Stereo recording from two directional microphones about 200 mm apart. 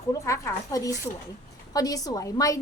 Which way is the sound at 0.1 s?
15° left (ahead or behind).